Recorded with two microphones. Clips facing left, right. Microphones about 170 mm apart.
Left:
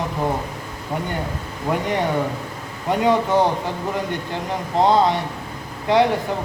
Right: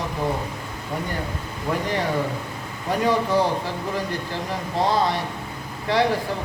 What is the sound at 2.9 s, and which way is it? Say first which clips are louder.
Speech: left 3 dB; 20° left (ahead or behind).